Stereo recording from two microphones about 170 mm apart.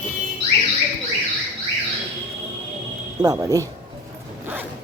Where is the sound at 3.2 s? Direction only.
20° right (ahead or behind).